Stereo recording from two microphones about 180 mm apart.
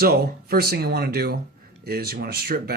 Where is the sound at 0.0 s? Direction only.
60° right (ahead or behind).